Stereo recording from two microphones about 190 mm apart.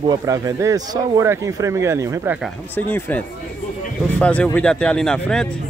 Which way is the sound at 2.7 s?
10° left (ahead or behind).